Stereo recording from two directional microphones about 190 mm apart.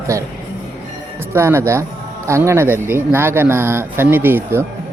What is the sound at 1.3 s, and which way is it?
Speech, 15° right (ahead or behind).